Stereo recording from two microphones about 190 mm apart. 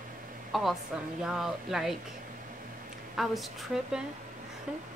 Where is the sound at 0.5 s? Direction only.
Centre (ahead or behind).